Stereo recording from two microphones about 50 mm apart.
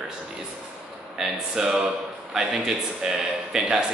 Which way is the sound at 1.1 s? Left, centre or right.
Centre.